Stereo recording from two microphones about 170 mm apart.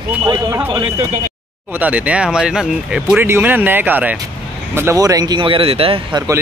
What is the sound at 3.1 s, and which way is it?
A man's voice, 15° right (ahead or behind).